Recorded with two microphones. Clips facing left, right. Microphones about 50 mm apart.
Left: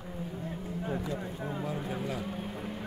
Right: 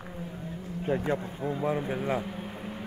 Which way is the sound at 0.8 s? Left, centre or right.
Right.